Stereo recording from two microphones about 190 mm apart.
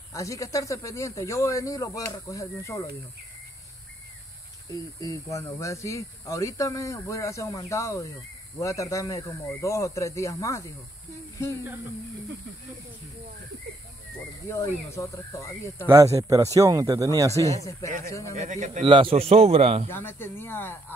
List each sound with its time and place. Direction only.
0.1 s speech: 15° left (ahead or behind)
5.0 s speech: 15° left (ahead or behind)
14.5 s speech: 15° left (ahead or behind)
15.9 s speech: 15° right (ahead or behind)
17.8 s speech: 15° left (ahead or behind)
18.3 s a man's voice: 40° right (ahead or behind)
19.9 s speech: 10° left (ahead or behind)